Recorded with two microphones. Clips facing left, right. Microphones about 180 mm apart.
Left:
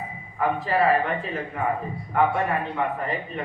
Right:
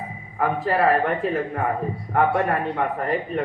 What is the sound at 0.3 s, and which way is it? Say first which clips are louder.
Speech: right 1 dB; 50° right (ahead or behind).